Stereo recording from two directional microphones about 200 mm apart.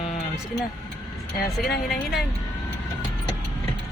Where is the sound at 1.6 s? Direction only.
50° left (ahead or behind).